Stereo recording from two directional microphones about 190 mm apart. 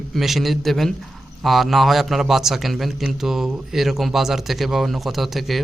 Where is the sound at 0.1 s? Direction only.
Centre (ahead or behind).